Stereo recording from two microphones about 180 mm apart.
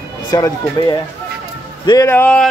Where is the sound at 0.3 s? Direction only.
20° left (ahead or behind).